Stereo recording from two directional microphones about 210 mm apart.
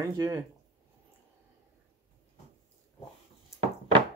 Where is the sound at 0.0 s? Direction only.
15° right (ahead or behind).